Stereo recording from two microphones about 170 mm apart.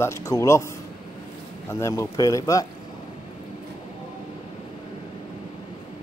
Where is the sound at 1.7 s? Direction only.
20° left (ahead or behind).